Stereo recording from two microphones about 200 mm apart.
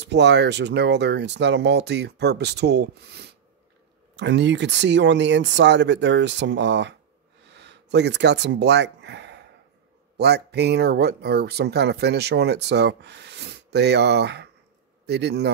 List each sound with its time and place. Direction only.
0.0 s speech: 60° right (ahead or behind)
7.5 s a sound: 60° right (ahead or behind)
10.1 s speech: 55° right (ahead or behind)